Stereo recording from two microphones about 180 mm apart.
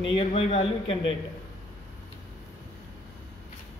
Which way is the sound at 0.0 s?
30° left (ahead or behind).